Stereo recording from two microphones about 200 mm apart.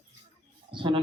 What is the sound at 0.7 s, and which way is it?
Speech, 25° right (ahead or behind).